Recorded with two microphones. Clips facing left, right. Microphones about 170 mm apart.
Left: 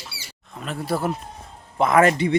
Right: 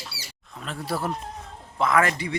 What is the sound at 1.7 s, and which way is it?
Speech, 20° left (ahead or behind).